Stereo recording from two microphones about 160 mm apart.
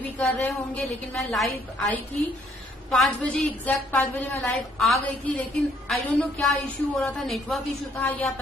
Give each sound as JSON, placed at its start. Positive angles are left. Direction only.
{"t": 0.2, "sound": "a woman's voice", "side_deg": 0}
{"t": 2.9, "sound": "a woman's voice", "side_deg": 5}